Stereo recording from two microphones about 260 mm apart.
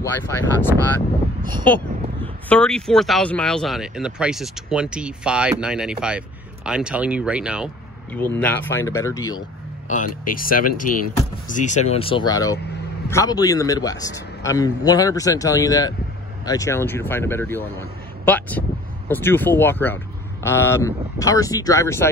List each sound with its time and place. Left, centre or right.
0.0 s a man's voice: centre
2.5 s speech: centre
10.2 s a man's voice: left; by 22.0 s centre